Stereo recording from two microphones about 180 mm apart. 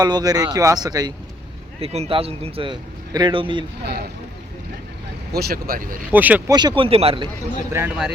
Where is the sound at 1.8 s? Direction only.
35° right (ahead or behind).